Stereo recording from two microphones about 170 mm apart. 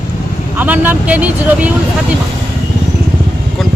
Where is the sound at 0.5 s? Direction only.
10° right (ahead or behind).